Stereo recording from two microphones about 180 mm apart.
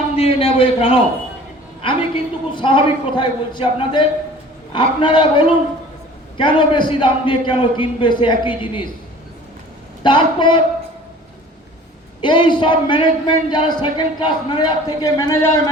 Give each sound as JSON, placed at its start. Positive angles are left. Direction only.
{"t": 0.2, "sound": "a man's voice", "side_deg": 30}
{"t": 10.0, "sound": "a man's voice", "side_deg": 25}
{"t": 12.2, "sound": "a man's voice", "side_deg": 25}